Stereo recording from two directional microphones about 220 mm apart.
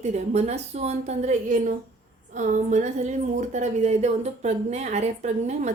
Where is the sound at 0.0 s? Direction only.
30° right (ahead or behind).